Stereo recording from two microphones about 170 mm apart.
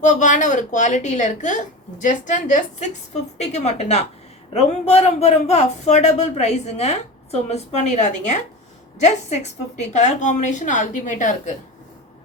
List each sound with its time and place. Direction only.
0.0 s a woman's voice: 45° left (ahead or behind)